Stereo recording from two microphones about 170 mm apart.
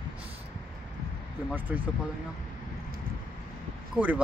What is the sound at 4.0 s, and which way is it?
Speech, 5° right (ahead or behind).